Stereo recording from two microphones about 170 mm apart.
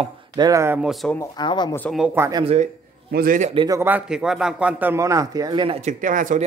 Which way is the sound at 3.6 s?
15° right (ahead or behind).